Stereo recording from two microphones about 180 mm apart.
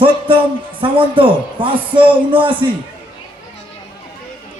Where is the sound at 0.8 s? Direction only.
30° right (ahead or behind).